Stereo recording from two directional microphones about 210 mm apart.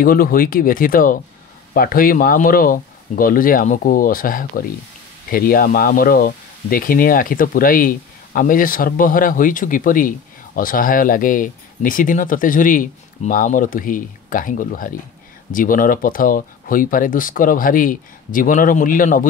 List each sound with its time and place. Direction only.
0.0 s speech: 45° left (ahead or behind)